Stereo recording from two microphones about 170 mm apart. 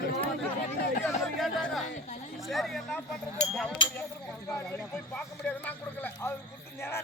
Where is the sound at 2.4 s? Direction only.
Centre (ahead or behind).